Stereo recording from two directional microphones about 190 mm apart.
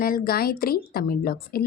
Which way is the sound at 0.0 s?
50° left (ahead or behind).